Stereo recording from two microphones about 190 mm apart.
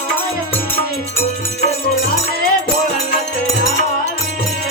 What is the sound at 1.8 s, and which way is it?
Music, 50° left (ahead or behind).